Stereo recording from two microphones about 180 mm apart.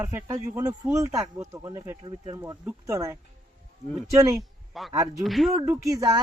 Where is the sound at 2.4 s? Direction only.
15° right (ahead or behind).